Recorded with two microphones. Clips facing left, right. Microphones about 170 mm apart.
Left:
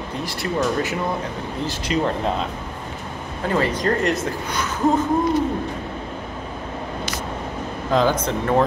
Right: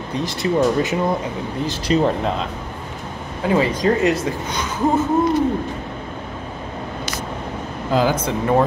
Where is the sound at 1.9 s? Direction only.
35° right (ahead or behind).